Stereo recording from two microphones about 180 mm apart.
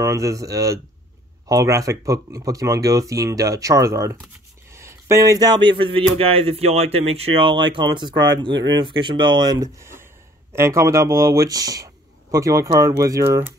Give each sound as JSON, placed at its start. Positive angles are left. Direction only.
{"t": 0.0, "sound": "speech", "side_deg": -15}